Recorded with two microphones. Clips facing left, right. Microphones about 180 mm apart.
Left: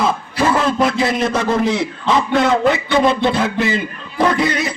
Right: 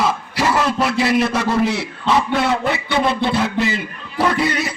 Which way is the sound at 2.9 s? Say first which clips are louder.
Even; 50° left (ahead or behind).